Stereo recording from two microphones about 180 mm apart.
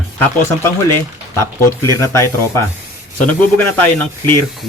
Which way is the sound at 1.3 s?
15° left (ahead or behind).